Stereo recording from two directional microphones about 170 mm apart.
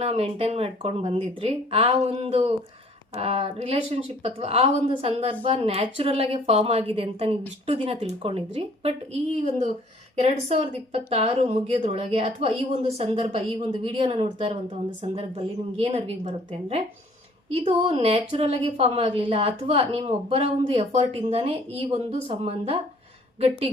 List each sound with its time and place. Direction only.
0.0 s speech: 35° right (ahead or behind)
10.2 s speech: 35° right (ahead or behind)